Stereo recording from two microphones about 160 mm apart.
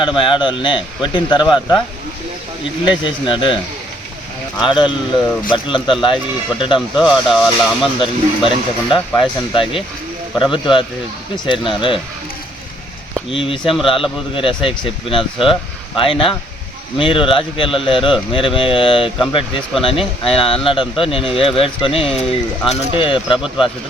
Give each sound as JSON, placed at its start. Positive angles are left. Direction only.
{"t": 0.0, "sound": "a man's voice", "side_deg": 30}
{"t": 2.8, "sound": "speech", "side_deg": 30}
{"t": 5.5, "sound": "speech", "side_deg": 30}
{"t": 6.9, "sound": "speech", "side_deg": 0}
{"t": 7.9, "sound": "speech", "side_deg": 30}
{"t": 13.3, "sound": "speech", "side_deg": 35}